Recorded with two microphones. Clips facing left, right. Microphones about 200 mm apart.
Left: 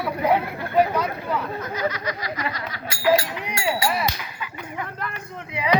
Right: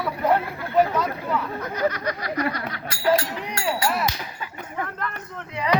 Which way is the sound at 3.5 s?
10° left (ahead or behind).